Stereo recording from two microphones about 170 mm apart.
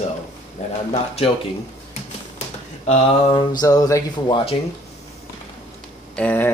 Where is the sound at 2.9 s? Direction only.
30° left (ahead or behind).